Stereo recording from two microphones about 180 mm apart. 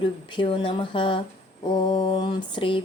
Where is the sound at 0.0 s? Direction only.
25° left (ahead or behind).